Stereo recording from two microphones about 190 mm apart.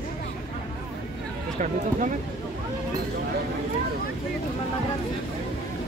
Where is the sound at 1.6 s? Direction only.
40° right (ahead or behind).